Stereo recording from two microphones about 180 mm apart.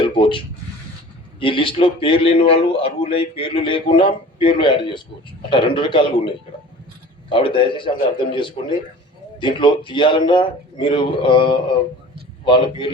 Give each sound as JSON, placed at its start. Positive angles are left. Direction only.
{"t": 0.0, "sound": "a man's voice", "side_deg": 25}